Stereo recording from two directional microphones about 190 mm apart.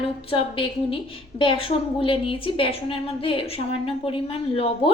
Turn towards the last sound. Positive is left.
turn(degrees=30)  # may be behind; listen again after turning